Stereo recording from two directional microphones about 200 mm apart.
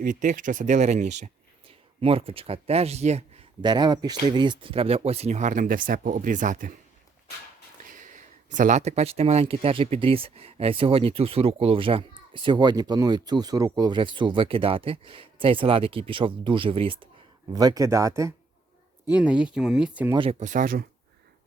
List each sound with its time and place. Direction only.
0.0 s speech: 40° right (ahead or behind)
7.9 s speech: 40° right (ahead or behind); by 20.1 s 5° right (ahead or behind)
20.4 s speech: 40° right (ahead or behind)